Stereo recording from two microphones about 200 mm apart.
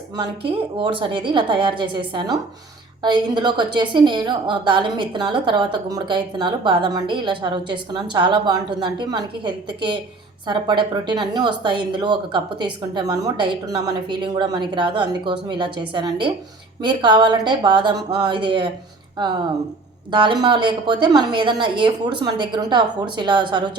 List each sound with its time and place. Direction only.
0.8 s a woman's voice: 25° right (ahead or behind)
20.1 s a woman's voice: 25° right (ahead or behind)